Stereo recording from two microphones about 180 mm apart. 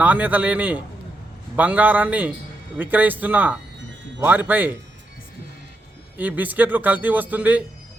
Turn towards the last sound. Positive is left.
turn(degrees=-10)  # may be behind; listen again after turning